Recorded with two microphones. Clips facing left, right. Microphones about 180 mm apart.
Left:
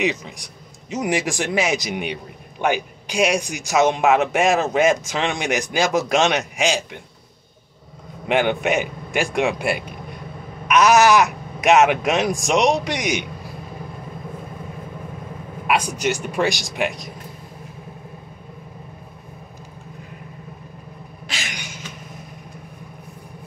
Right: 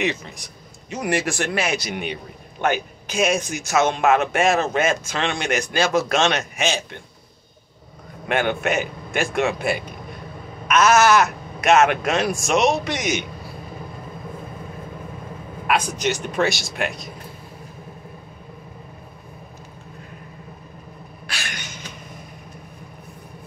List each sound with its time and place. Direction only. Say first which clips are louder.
0.0 s a man's voice: left 2 dB; 15° left (ahead or behind)
8.3 s a man's voice: left 2 dB; 15° left (ahead or behind)
15.6 s a man's voice: left 1 dB; 15° left (ahead or behind)
21.3 s a sound: left 1 dB; 15° left (ahead or behind)